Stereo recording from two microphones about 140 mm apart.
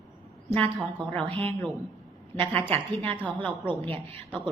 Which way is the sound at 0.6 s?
35° right (ahead or behind).